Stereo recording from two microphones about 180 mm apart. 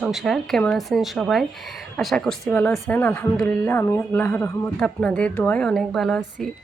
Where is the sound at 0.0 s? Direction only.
Centre (ahead or behind).